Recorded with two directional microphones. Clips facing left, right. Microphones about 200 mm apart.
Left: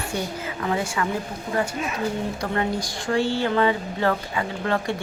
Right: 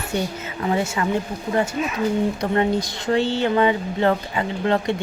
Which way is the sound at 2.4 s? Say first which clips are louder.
Right 5 dB; 20° right (ahead or behind).